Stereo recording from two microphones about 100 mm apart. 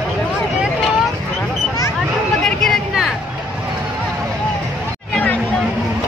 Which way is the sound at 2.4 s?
5° left (ahead or behind).